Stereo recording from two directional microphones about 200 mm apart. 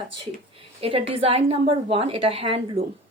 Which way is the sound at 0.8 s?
30° right (ahead or behind).